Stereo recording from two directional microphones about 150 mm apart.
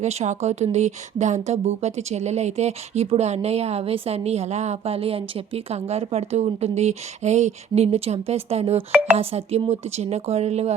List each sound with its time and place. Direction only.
0.0 s speech: 50° right (ahead or behind)